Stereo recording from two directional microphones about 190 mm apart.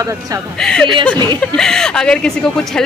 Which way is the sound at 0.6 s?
5° left (ahead or behind).